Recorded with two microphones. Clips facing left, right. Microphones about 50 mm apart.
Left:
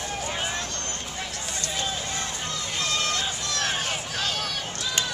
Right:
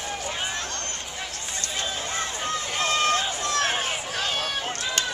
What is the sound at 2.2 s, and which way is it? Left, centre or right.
Run, right.